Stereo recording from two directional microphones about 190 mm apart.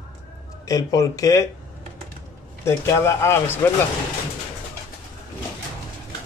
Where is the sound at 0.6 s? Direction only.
20° left (ahead or behind).